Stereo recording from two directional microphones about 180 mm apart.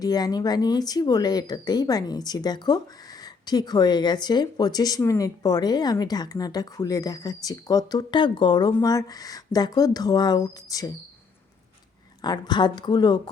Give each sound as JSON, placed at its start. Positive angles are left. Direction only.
{"t": 0.0, "sound": "speech", "side_deg": 20}
{"t": 12.2, "sound": "speech", "side_deg": 25}